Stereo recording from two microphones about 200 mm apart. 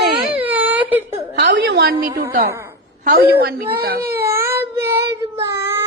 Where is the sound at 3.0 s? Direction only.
50° right (ahead or behind).